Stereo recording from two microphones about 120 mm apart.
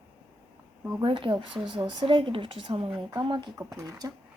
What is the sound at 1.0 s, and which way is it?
Speech, 45° right (ahead or behind).